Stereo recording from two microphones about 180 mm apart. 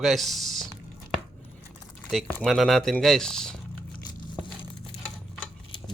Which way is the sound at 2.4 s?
Centre (ahead or behind).